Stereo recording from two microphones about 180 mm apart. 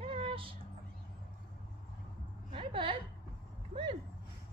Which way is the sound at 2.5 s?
30° right (ahead or behind).